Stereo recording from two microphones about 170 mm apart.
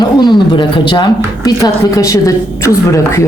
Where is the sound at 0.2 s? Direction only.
25° left (ahead or behind).